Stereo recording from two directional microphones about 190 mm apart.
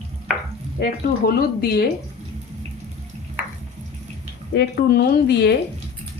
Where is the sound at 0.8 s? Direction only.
55° left (ahead or behind).